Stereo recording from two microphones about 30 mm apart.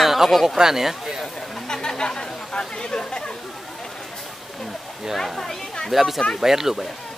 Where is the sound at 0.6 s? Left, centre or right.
Centre.